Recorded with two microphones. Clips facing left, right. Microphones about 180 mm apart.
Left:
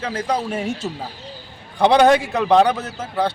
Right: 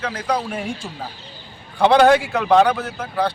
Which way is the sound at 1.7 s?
15° left (ahead or behind).